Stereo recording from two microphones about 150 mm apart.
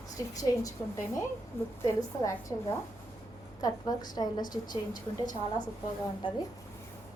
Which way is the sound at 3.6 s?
25° left (ahead or behind).